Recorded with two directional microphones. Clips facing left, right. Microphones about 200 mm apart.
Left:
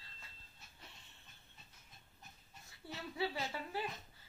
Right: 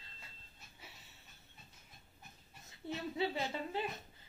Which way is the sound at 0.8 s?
5° right (ahead or behind).